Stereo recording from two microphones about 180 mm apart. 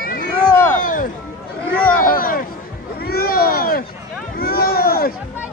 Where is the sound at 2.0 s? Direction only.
50° left (ahead or behind).